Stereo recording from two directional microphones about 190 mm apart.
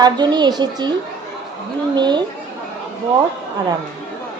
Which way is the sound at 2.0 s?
25° right (ahead or behind).